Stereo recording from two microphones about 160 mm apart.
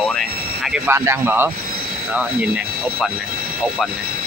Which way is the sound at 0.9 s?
15° right (ahead or behind).